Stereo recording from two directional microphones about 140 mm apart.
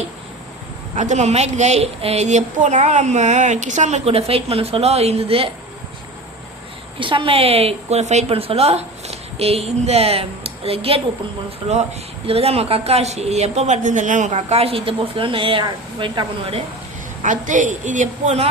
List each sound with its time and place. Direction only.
0.9 s a woman's voice: 55° right (ahead or behind)
7.0 s speech: 35° right (ahead or behind)
17.2 s a woman's voice: 65° right (ahead or behind)